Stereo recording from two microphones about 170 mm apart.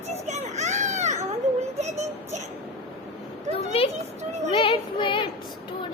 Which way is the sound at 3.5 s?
35° left (ahead or behind).